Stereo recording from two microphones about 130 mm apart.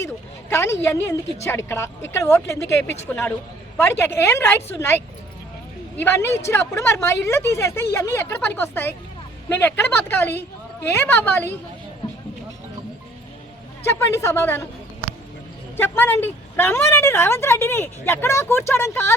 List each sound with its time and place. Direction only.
0.5 s a woman's voice: 20° left (ahead or behind)
13.8 s speech: 20° left (ahead or behind)
15.8 s a woman's voice: 15° left (ahead or behind)